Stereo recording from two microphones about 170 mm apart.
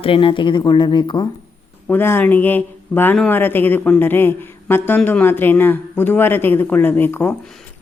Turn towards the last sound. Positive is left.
turn(degrees=10)  # may be behind; listen again after turning